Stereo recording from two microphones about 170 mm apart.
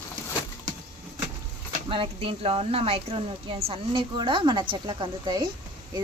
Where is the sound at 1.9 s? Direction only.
30° right (ahead or behind).